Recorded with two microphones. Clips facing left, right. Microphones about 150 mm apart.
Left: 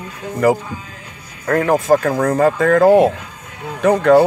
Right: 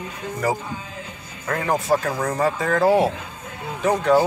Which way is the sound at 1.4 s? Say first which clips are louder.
Left 8 dB; 55° left (ahead or behind).